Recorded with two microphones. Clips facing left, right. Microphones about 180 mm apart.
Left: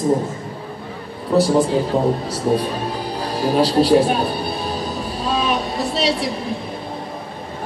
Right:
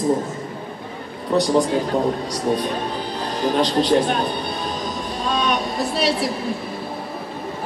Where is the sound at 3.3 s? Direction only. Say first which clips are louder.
Left 3 dB; 10° left (ahead or behind).